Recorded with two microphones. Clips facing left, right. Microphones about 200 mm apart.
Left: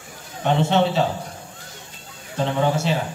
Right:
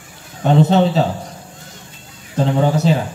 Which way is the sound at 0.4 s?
40° right (ahead or behind).